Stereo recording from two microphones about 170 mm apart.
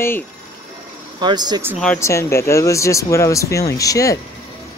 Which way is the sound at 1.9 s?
15° left (ahead or behind).